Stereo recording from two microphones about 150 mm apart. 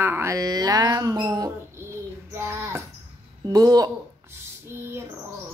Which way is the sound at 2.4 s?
15° right (ahead or behind).